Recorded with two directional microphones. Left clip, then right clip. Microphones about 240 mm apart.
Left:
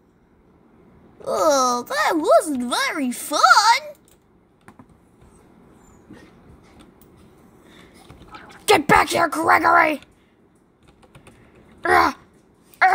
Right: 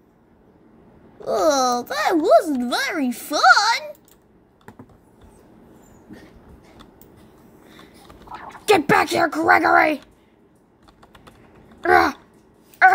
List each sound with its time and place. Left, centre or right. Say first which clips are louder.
1.2 s speech: even; centre
8.6 s speech: left 1 dB; centre
11.8 s a sound: right 1 dB; centre
12.8 s dog: right 3 dB; centre